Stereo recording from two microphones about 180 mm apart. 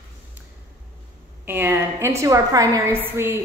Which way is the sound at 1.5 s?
10° right (ahead or behind).